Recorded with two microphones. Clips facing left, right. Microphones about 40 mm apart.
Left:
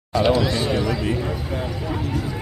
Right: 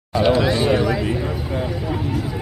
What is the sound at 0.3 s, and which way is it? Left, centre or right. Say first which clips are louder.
Speech: right 5 dB; centre.